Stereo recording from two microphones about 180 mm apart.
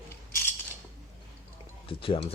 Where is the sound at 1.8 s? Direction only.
30° left (ahead or behind).